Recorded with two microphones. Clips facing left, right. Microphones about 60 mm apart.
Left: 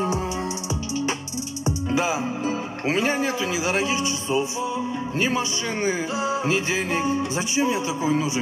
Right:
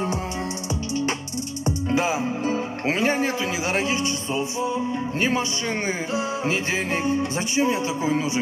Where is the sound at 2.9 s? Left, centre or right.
Right.